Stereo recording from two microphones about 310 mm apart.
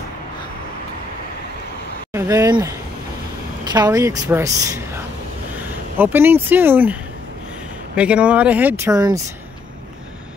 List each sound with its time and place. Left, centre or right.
2.1 s a woman's voice: centre
3.7 s a woman's voice: centre